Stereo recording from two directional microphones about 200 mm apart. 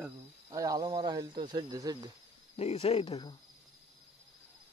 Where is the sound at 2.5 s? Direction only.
30° left (ahead or behind).